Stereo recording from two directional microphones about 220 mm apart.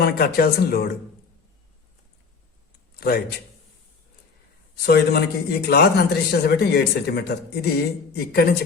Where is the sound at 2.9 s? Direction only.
45° left (ahead or behind).